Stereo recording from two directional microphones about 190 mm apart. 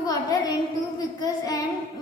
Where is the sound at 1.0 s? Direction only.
20° left (ahead or behind).